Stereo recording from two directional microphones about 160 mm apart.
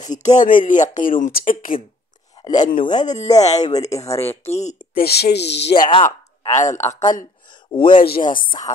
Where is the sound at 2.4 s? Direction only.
50° left (ahead or behind).